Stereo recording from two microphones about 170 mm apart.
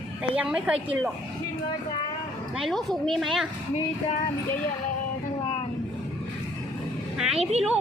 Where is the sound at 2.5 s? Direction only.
Centre (ahead or behind).